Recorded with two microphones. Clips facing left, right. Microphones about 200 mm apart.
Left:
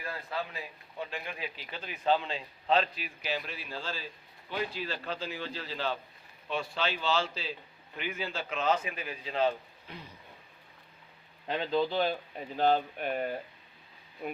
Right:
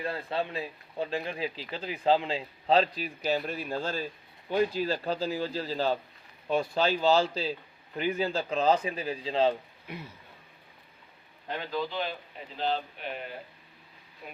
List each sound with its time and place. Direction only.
0.0 s speech: 30° right (ahead or behind)
11.4 s speech: 25° left (ahead or behind)
12.5 s speech: 50° left (ahead or behind)